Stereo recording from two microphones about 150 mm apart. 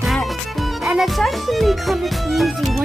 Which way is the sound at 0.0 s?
Centre (ahead or behind).